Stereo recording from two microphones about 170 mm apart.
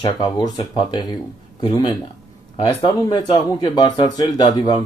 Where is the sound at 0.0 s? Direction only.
25° left (ahead or behind).